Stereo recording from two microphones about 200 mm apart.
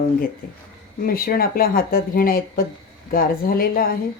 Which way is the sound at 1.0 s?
45° left (ahead or behind).